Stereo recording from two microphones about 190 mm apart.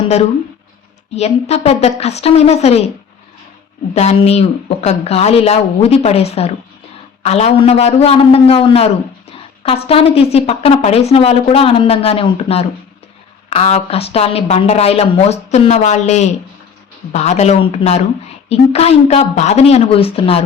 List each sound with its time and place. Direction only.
1.1 s a woman's voice: 35° left (ahead or behind)
3.9 s a woman's voice: 35° left (ahead or behind)